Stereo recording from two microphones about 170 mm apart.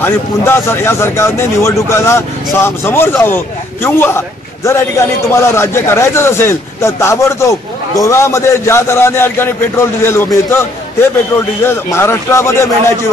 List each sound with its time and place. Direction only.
0.0 s a man's voice: 15° left (ahead or behind)